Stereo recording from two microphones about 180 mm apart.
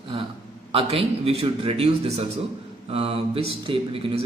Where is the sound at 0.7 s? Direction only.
35° right (ahead or behind).